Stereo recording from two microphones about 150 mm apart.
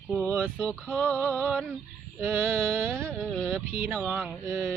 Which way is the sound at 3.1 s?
5° left (ahead or behind).